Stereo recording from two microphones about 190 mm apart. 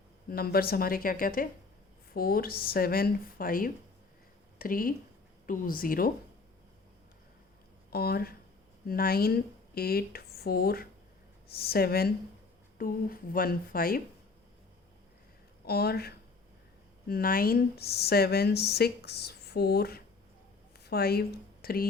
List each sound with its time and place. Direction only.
0.3 s speech: 55° left (ahead or behind)
7.9 s speech: 55° left (ahead or behind)
15.6 s speech: 55° left (ahead or behind)